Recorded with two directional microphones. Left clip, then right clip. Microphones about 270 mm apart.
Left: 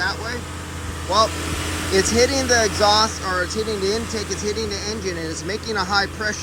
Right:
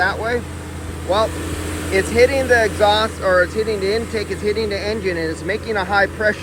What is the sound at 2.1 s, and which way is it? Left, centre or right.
Speech, centre.